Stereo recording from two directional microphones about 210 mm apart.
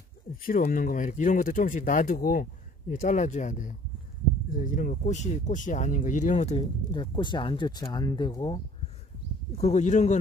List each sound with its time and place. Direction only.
0.5 s speech: 40° left (ahead or behind)
6.9 s speech: 20° left (ahead or behind)
9.6 s speech: 30° left (ahead or behind)